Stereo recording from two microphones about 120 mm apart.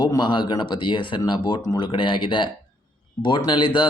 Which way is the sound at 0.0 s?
35° left (ahead or behind).